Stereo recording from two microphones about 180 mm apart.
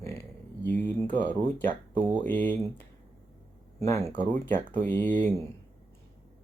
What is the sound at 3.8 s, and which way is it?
Speech, 15° left (ahead or behind).